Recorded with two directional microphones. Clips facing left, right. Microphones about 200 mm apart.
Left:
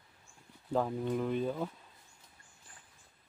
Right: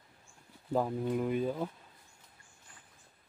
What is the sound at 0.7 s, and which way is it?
Speech, 10° right (ahead or behind).